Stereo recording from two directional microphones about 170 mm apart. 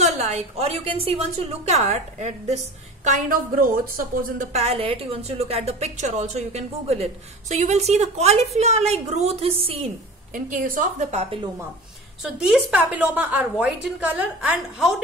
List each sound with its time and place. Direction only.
0.0 s a woman's voice: 40° right (ahead or behind)
10.3 s a woman's voice: 50° right (ahead or behind)
12.2 s a woman's voice: 5° right (ahead or behind)